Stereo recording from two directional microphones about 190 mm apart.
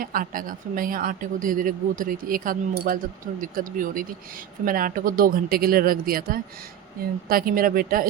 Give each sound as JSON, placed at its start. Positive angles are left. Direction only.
{"t": 0.0, "sound": "speech", "side_deg": -45}